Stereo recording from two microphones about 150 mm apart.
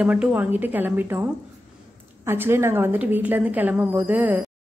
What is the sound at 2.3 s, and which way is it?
A woman's voice, 15° right (ahead or behind).